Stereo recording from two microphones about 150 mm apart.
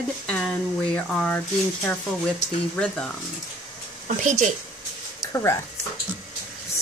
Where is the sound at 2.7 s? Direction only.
5° left (ahead or behind).